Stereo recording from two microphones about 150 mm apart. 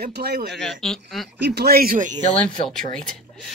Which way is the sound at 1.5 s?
90° right.